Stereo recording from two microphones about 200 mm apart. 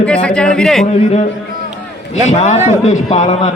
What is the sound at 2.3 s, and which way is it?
A man's voice, 30° left (ahead or behind).